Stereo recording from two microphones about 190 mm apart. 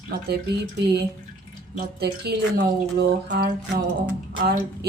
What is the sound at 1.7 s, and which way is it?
A woman's voice, 55° right (ahead or behind).